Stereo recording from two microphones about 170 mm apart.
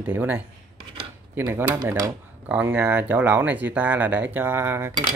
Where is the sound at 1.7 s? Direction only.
25° right (ahead or behind).